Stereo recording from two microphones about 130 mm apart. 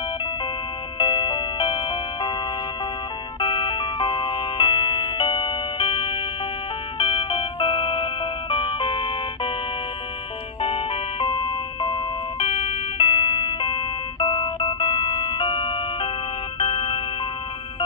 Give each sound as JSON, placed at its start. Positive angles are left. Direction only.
{"t": 0.9, "sound": "music", "side_deg": 35}
{"t": 3.3, "sound": "music", "side_deg": 40}
{"t": 10.6, "sound": "music", "side_deg": 45}